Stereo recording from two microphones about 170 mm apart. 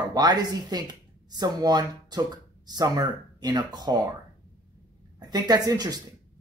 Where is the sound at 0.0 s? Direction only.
25° right (ahead or behind).